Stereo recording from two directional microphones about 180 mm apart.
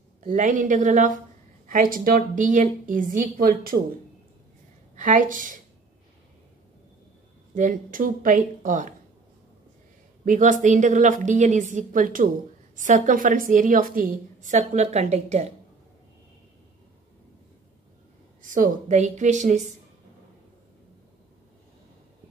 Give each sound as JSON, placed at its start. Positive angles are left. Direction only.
{"t": 0.2, "sound": "a woman's voice", "side_deg": -45}
{"t": 4.9, "sound": "a woman's voice", "side_deg": -45}
{"t": 7.5, "sound": "a woman's voice", "side_deg": -45}
{"t": 10.2, "sound": "a woman's voice", "side_deg": -45}
{"t": 18.4, "sound": "a woman's voice", "side_deg": -45}